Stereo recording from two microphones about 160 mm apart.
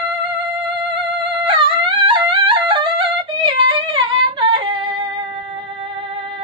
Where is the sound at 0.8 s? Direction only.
35° right (ahead or behind).